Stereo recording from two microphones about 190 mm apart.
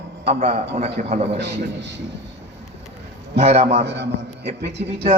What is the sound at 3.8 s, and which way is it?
Speech, 65° right (ahead or behind).